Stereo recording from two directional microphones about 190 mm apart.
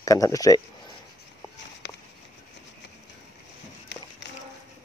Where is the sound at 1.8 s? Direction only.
70° left (ahead or behind).